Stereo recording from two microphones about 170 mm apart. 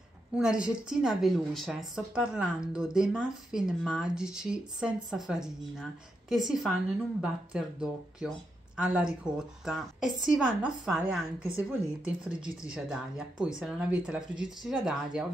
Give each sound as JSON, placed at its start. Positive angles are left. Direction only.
{"t": 0.4, "sound": "a woman's voice", "side_deg": -5}